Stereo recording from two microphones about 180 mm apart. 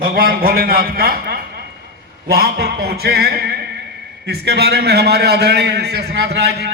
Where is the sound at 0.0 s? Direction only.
55° right (ahead or behind).